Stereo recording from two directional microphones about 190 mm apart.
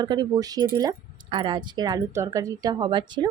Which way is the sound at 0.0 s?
20° right (ahead or behind).